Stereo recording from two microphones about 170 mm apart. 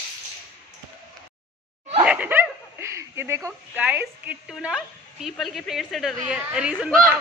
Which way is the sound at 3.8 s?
10° right (ahead or behind).